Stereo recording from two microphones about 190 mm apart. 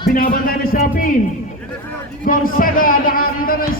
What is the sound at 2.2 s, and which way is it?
Speech, 45° left (ahead or behind).